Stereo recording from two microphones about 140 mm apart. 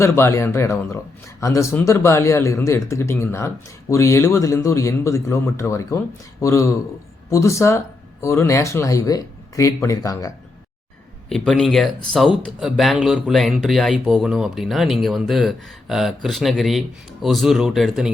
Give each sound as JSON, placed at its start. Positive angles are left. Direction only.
{"t": 0.0, "sound": "a man's voice", "side_deg": 20}
{"t": 11.3, "sound": "speech", "side_deg": 5}